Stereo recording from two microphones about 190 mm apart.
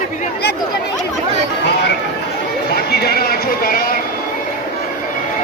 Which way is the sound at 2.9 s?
55° left (ahead or behind).